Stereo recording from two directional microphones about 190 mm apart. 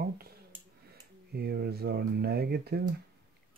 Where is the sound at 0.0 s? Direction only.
55° right (ahead or behind).